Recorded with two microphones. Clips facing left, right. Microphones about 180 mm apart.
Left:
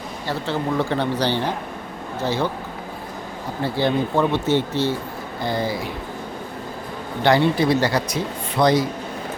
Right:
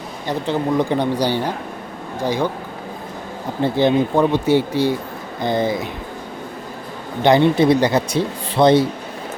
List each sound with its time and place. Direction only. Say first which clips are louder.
0.3 s speech: right 4 dB; 15° right (ahead or behind)
3.6 s speech: right 5 dB; 20° right (ahead or behind)
7.2 s speech: right 4 dB; 20° right (ahead or behind)